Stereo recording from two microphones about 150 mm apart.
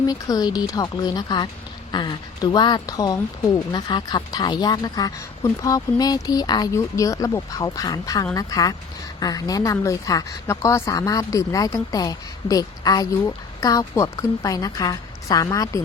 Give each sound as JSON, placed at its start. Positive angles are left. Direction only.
{"t": 0.1, "sound": "speech", "side_deg": 25}